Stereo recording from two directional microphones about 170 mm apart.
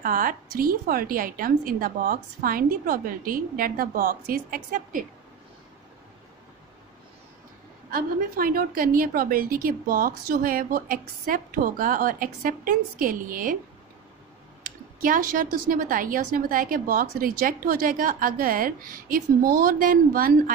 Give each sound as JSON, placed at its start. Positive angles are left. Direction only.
{"t": 0.0, "sound": "a woman's voice", "side_deg": -55}
{"t": 7.9, "sound": "a woman's voice", "side_deg": -60}
{"t": 15.0, "sound": "a woman's voice", "side_deg": -55}